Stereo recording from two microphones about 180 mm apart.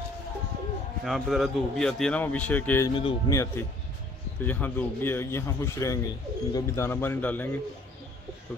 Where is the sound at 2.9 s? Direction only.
30° left (ahead or behind).